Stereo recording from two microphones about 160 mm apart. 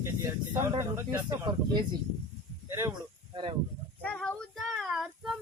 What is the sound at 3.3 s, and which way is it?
Speech, 30° right (ahead or behind).